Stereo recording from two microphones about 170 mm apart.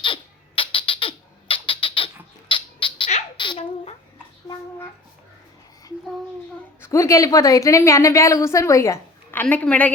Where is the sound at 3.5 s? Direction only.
25° left (ahead or behind).